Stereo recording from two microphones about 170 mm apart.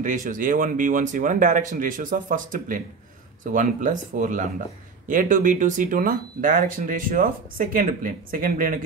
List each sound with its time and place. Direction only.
0.0 s speech: 50° right (ahead or behind)